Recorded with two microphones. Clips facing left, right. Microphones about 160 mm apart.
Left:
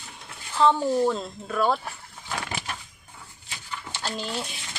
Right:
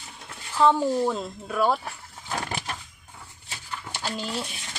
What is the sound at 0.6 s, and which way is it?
Speech, 5° right (ahead or behind).